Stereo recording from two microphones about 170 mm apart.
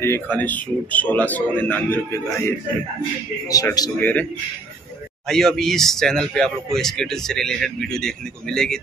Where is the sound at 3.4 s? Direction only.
20° left (ahead or behind).